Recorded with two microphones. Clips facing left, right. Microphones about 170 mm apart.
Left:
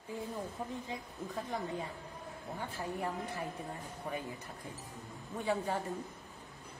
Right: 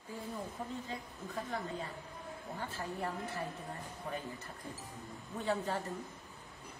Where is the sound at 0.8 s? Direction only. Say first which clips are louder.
Left 2 dB; 15° left (ahead or behind).